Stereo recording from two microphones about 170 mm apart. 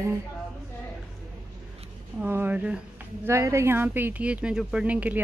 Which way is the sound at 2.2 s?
10° right (ahead or behind).